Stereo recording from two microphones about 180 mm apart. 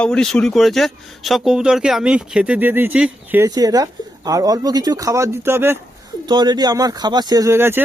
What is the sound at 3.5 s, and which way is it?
Speech, 20° right (ahead or behind).